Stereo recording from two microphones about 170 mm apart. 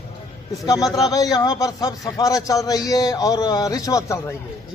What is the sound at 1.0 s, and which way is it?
A man's voice, 20° left (ahead or behind).